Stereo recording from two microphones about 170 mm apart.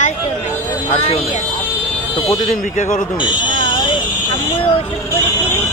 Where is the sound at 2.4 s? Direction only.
45° left (ahead or behind).